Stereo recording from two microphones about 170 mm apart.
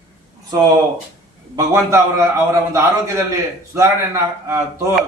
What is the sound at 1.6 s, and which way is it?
A man's voice, 15° right (ahead or behind).